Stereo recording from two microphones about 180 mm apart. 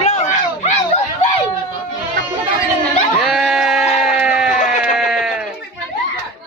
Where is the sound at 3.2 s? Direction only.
Centre (ahead or behind).